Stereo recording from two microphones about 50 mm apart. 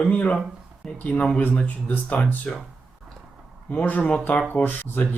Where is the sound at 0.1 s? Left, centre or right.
Left.